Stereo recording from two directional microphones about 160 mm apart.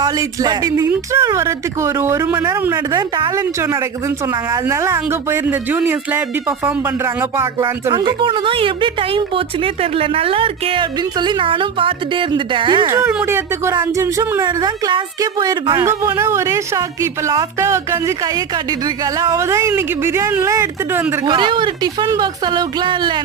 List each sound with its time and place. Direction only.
0.0 s speech: 25° right (ahead or behind)
7.9 s speech: 30° right (ahead or behind)
12.8 s speech: 15° right (ahead or behind)
15.9 s speech: 15° right (ahead or behind)
19.2 s speech: 20° right (ahead or behind)
21.2 s speech: 30° right (ahead or behind)